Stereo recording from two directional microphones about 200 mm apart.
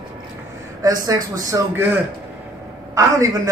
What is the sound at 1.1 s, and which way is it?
A man's voice, 15° right (ahead or behind).